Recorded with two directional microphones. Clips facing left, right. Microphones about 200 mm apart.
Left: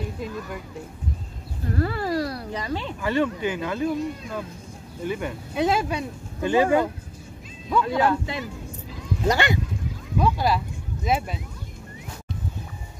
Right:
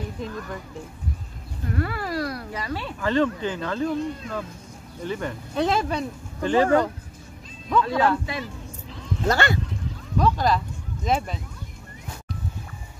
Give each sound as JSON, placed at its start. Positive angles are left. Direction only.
{"t": 0.2, "sound": "speech", "side_deg": 10}
{"t": 1.7, "sound": "speech", "side_deg": 30}